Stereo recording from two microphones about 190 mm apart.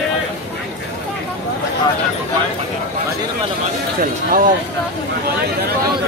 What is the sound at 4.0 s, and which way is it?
Speech, 45° right (ahead or behind).